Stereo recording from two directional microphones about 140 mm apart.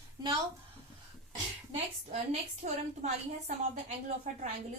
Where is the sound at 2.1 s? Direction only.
50° right (ahead or behind).